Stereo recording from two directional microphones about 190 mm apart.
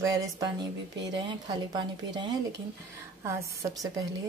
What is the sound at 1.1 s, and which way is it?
A woman's voice, 20° right (ahead or behind).